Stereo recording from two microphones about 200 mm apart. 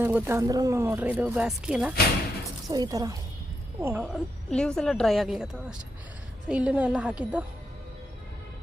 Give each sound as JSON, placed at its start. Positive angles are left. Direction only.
{"t": 0.0, "sound": "speech", "side_deg": -10}
{"t": 2.6, "sound": "a woman's voice", "side_deg": -20}